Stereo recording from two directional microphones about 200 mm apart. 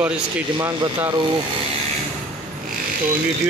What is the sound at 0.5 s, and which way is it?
Speech, 20° right (ahead or behind).